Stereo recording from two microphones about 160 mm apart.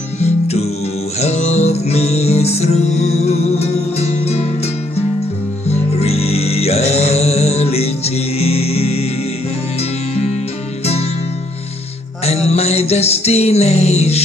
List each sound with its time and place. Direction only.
0.2 s music: 40° left (ahead or behind)
5.7 s music: 40° left (ahead or behind)
12.3 s music: 40° left (ahead or behind)